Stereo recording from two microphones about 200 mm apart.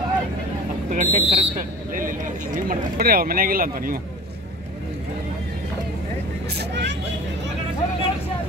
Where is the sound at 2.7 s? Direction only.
45° right (ahead or behind).